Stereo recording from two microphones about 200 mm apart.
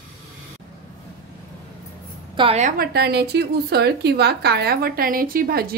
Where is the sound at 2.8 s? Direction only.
55° right (ahead or behind).